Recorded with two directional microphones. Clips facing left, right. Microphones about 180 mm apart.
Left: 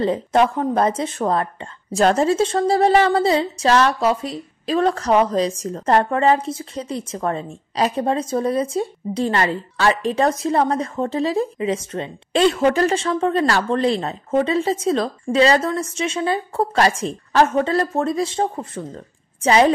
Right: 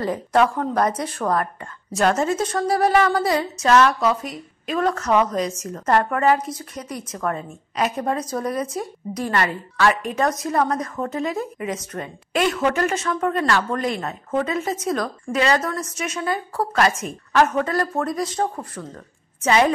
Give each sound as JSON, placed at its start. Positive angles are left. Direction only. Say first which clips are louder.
{"t": 0.0, "sound": "a woman's voice", "louder": "left 2 dB", "side_deg": 25}